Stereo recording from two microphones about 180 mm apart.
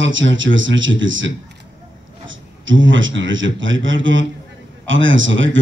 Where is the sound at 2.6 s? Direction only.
90° right.